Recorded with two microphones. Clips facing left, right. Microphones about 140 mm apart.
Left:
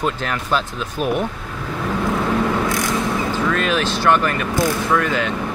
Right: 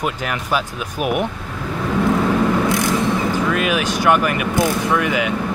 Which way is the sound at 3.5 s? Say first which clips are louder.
Right 1 dB; 10° right (ahead or behind).